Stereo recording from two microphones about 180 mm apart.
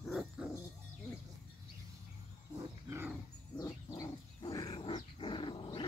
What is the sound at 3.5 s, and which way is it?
Dog, 20° left (ahead or behind).